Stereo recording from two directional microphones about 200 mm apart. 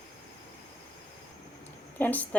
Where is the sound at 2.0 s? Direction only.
10° left (ahead or behind).